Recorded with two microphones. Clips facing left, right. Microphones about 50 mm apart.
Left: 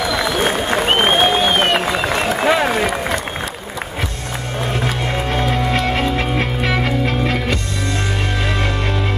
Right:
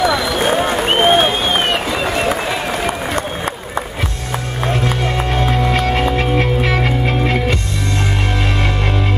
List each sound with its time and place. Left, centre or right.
0.8 s applause: centre
5.0 s music: centre